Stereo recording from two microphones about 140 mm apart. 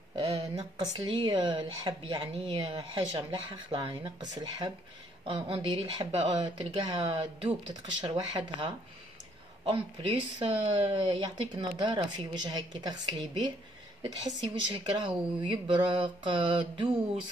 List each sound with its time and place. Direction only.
0.7 s speech: 35° right (ahead or behind)
9.7 s speech: 45° right (ahead or behind)